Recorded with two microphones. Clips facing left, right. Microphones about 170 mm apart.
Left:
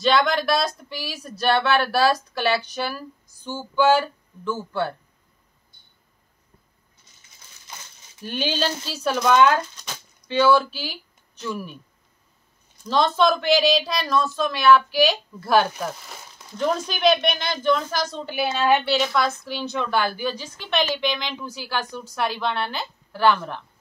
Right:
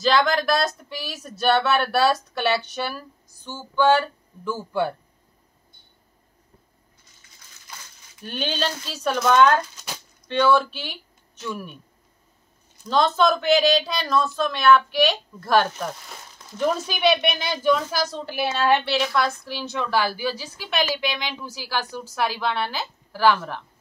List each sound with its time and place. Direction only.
0.0 s speech: centre (ahead or behind)
3.4 s a sound: 10° left (ahead or behind)
4.5 s speech: 10° right (ahead or behind)
7.7 s crumpling: 25° left (ahead or behind)
8.2 s speech: 5° left (ahead or behind)
12.8 s speech: centre (ahead or behind)